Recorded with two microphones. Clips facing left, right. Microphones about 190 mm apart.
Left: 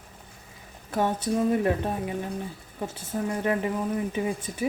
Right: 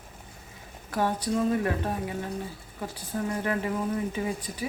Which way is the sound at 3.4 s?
20° left (ahead or behind).